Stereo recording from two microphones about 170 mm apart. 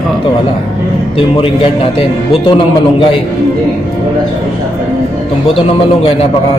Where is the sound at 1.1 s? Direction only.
35° left (ahead or behind).